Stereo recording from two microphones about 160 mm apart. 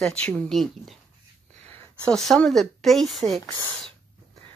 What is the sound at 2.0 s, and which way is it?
Speech, 5° left (ahead or behind).